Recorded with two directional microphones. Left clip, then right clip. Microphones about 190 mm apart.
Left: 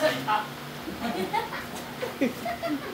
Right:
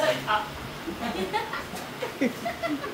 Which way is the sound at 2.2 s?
10° right (ahead or behind).